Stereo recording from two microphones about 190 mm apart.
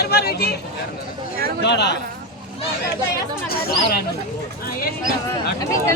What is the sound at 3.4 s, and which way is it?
Speech, 55° left (ahead or behind).